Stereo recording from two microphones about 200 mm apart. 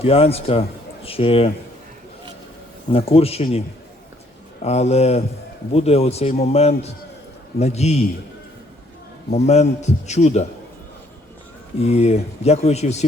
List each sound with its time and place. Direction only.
0.0 s speech: 30° left (ahead or behind)
2.9 s speech: 30° left (ahead or behind)
4.6 s speech: 30° left (ahead or behind)
9.3 s speech: 35° left (ahead or behind)
11.8 s speech: 30° left (ahead or behind)